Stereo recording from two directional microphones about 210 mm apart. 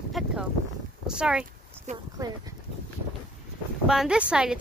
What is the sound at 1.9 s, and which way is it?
Speech, 35° right (ahead or behind).